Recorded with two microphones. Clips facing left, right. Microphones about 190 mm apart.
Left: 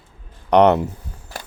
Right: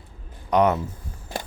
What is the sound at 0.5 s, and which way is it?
Speech, 70° left (ahead or behind).